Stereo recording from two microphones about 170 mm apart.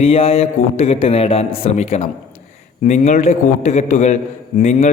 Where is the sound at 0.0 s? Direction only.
35° left (ahead or behind).